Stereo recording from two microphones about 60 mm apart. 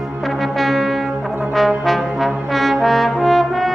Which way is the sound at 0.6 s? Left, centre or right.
Centre.